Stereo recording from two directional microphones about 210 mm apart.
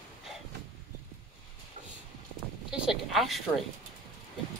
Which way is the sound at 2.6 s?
5° right (ahead or behind).